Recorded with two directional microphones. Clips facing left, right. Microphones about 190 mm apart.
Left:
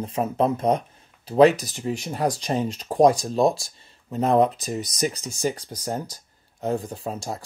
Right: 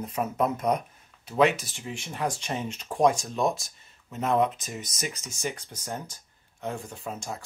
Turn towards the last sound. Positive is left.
turn(degrees=35)  # may be behind; listen again after turning